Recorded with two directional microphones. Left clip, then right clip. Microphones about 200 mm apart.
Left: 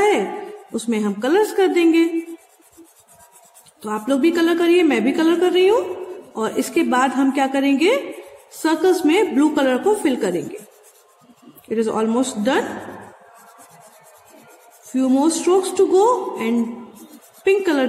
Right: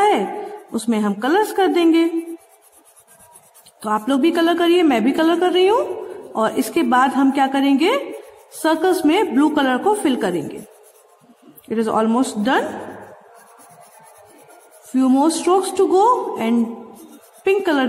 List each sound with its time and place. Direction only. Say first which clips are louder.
0.7 s a woman's voice: right 1 dB; 15° right (ahead or behind)
3.8 s a woman's voice: right 1 dB; 20° right (ahead or behind)
11.7 s a woman's voice: right 1 dB; 20° right (ahead or behind)
15.0 s a woman's voice: right 2 dB; 20° right (ahead or behind)